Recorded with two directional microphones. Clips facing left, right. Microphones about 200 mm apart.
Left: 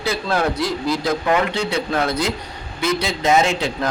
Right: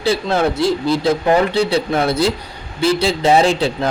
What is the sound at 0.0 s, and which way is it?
A man's voice, 25° right (ahead or behind).